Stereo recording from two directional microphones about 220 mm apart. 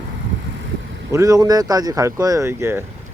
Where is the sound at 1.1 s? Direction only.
15° right (ahead or behind).